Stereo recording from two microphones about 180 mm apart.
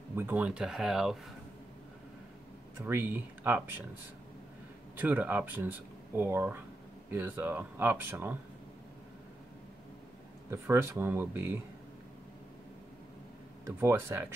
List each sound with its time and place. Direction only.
0.1 s speech: 10° right (ahead or behind)
2.8 s speech: 10° right (ahead or behind)
4.9 s speech: 10° right (ahead or behind)
10.5 s speech: 15° right (ahead or behind)
13.7 s speech: 15° right (ahead or behind)